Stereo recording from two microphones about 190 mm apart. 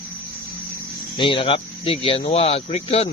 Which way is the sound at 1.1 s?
25° left (ahead or behind).